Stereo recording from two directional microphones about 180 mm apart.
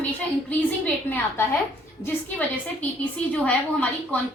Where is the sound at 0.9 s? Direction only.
10° left (ahead or behind).